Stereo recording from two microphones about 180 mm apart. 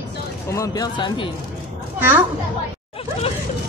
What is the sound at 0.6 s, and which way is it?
Speech, 25° left (ahead or behind).